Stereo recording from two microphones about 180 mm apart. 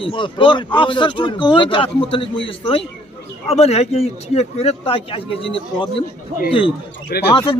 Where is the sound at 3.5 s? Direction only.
35° left (ahead or behind).